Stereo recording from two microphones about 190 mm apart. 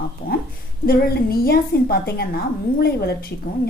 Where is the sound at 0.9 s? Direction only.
50° left (ahead or behind).